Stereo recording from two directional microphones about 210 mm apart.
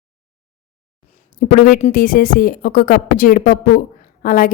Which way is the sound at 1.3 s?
40° left (ahead or behind).